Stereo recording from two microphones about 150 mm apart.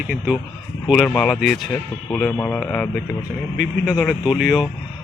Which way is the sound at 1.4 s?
5° right (ahead or behind).